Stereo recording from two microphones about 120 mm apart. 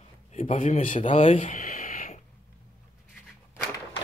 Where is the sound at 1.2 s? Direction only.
90° left.